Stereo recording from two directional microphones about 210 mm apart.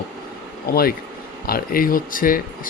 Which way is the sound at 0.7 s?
45° left (ahead or behind).